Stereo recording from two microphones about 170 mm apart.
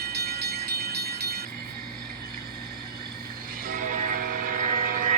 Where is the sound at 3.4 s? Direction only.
50° right (ahead or behind).